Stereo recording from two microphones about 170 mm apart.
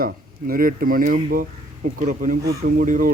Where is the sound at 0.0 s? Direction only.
55° right (ahead or behind).